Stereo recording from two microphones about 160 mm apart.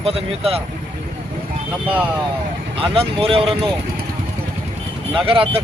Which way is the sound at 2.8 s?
35° right (ahead or behind).